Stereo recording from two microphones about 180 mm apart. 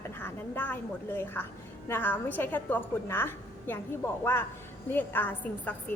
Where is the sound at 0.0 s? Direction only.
10° left (ahead or behind).